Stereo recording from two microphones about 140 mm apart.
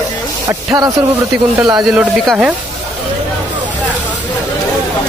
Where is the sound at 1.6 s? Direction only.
25° right (ahead or behind).